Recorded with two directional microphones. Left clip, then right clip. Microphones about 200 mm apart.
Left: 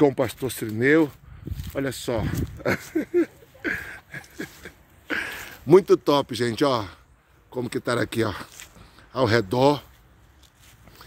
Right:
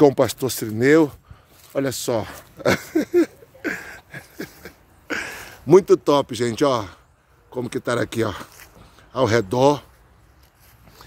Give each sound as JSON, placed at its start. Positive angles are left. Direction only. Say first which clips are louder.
{"t": 0.0, "sound": "speech", "louder": "right 5 dB", "side_deg": -20}
{"t": 3.6, "sound": "a sound", "louder": "even", "side_deg": -5}
{"t": 7.5, "sound": "speech", "louder": "right 2 dB", "side_deg": 5}